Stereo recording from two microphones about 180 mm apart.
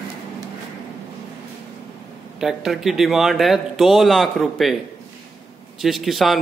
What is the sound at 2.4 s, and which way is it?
A man's voice, centre (ahead or behind).